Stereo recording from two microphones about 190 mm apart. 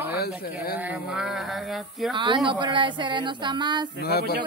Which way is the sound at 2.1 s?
25° right (ahead or behind).